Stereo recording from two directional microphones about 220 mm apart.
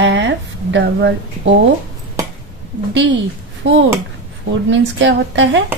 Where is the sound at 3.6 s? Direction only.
55° right (ahead or behind).